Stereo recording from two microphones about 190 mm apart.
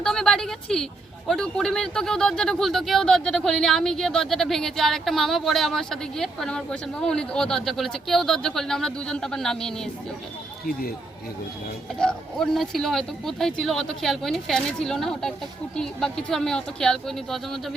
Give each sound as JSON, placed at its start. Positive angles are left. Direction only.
{"t": 0.0, "sound": "a woman's voice", "side_deg": 5}
{"t": 10.7, "sound": "speech", "side_deg": 50}
{"t": 11.9, "sound": "speech", "side_deg": 5}